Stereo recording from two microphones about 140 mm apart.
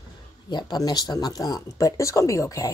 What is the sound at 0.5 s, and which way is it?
Speech, 30° left (ahead or behind).